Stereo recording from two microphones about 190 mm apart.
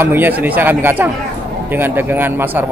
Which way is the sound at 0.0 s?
10° right (ahead or behind).